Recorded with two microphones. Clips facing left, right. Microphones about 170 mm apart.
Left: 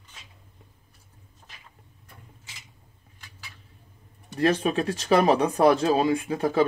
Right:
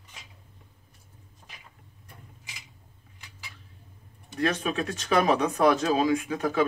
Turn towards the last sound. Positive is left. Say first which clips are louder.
# left 3 dB
turn(degrees=30)  # may be behind; listen again after turning